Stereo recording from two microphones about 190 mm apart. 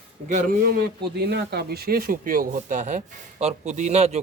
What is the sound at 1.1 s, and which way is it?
Speech, 60° right (ahead or behind).